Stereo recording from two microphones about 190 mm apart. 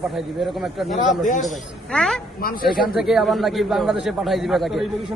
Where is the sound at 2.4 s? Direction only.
50° left (ahead or behind).